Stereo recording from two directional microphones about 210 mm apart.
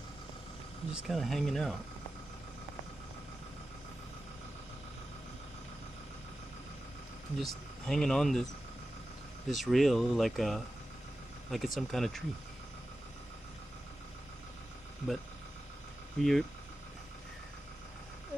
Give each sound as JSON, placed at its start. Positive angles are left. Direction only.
{"t": 0.9, "sound": "speech", "side_deg": 0}
{"t": 7.3, "sound": "speech", "side_deg": 0}
{"t": 9.5, "sound": "speech", "side_deg": 0}
{"t": 16.2, "sound": "speech", "side_deg": 0}